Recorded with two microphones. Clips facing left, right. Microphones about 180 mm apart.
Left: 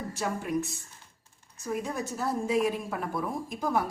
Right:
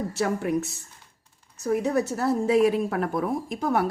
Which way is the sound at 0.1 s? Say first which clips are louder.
Right 3 dB; 70° right (ahead or behind).